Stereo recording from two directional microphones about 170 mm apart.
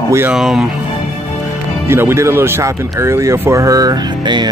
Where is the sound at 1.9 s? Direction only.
15° right (ahead or behind).